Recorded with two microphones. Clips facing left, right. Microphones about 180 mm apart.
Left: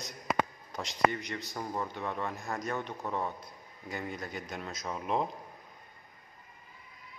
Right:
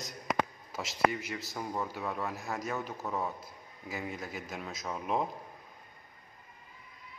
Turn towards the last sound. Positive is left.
turn(degrees=0)  # may be behind; listen again after turning